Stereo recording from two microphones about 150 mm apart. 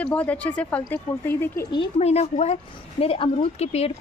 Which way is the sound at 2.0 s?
45° left (ahead or behind).